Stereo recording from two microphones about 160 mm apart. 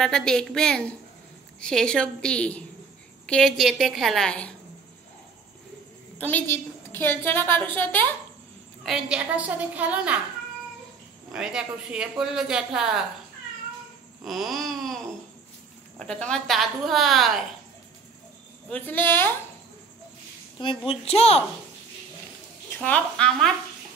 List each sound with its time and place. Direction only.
0.0 s speech: 5° left (ahead or behind)
6.1 s a woman's voice: 10° left (ahead or behind)
8.8 s a woman's voice: 5° right (ahead or behind)
11.3 s speech: 5° right (ahead or behind)
14.2 s speech: centre (ahead or behind)
16.0 s speech: 5° left (ahead or behind)
18.7 s a woman's voice: 10° left (ahead or behind)
20.5 s a child's voice: 35° left (ahead or behind)
22.8 s a woman's voice: 5° left (ahead or behind)